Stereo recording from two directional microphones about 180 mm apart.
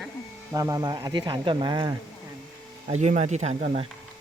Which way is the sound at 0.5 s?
20° right (ahead or behind).